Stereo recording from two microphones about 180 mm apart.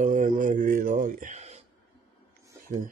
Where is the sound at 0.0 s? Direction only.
45° right (ahead or behind).